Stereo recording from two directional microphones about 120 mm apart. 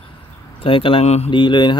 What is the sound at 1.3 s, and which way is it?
Mantra, 40° left (ahead or behind).